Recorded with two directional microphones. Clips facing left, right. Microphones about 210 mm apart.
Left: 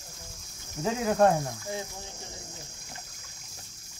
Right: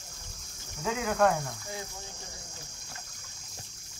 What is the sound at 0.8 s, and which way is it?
Speech, 35° left (ahead or behind).